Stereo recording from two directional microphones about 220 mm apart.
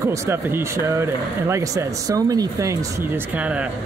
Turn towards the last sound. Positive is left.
turn(degrees=-5)  # may be behind; listen again after turning